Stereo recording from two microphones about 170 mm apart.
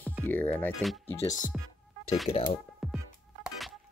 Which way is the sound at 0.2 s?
10° left (ahead or behind).